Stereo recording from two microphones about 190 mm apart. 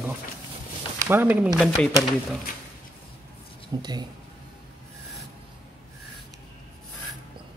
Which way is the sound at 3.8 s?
20° right (ahead or behind).